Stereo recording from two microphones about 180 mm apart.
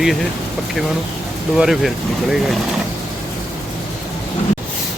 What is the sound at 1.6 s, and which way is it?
Speech, centre (ahead or behind).